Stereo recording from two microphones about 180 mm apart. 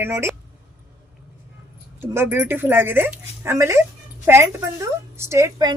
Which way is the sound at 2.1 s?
10° right (ahead or behind).